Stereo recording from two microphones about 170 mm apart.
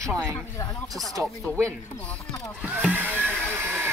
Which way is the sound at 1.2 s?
15° right (ahead or behind).